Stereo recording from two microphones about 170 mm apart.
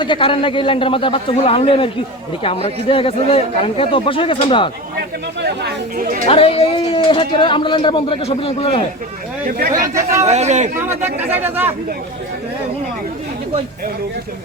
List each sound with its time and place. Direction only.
0.0 s a man's voice: 30° left (ahead or behind)
5.4 s speech: 75° right (ahead or behind)
6.2 s a man's voice: 35° left (ahead or behind)
9.5 s speech: 60° right (ahead or behind)
9.8 s speech: 15° right (ahead or behind)
10.2 s speech: 40° right (ahead or behind)
10.8 s speech: 10° right (ahead or behind)